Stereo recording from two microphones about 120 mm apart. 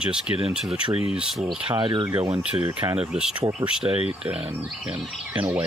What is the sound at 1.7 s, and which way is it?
Speech, 40° right (ahead or behind).